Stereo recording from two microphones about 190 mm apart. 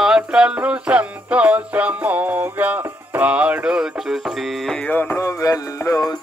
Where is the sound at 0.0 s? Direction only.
5° right (ahead or behind).